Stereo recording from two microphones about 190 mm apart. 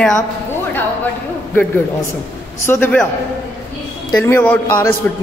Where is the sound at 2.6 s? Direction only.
10° left (ahead or behind).